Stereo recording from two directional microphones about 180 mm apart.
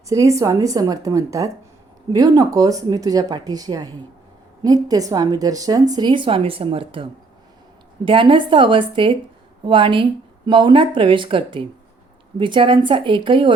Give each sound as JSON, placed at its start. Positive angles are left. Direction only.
{"t": 0.1, "sound": "a woman's voice", "side_deg": -15}